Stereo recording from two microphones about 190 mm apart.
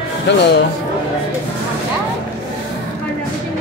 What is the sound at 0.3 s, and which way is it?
Speech, 65° left (ahead or behind).